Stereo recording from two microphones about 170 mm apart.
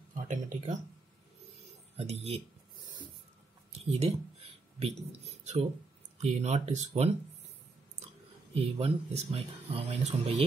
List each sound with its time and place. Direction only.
0.3 s speech: 50° right (ahead or behind)
2.0 s speech: 35° right (ahead or behind)
3.7 s speech: 35° right (ahead or behind)
8.7 s speech: 35° right (ahead or behind)